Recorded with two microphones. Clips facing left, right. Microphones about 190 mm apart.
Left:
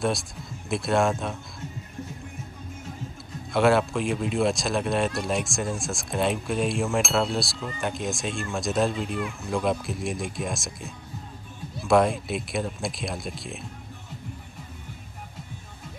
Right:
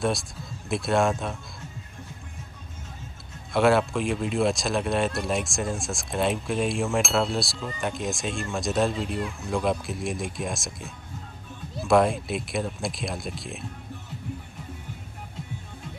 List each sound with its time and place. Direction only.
0.7 s speech: centre (ahead or behind)
3.5 s speech: centre (ahead or behind)